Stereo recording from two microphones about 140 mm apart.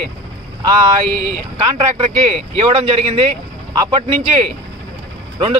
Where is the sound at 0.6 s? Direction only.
35° right (ahead or behind).